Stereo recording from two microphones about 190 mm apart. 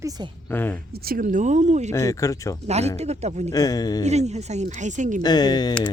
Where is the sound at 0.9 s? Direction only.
50° right (ahead or behind).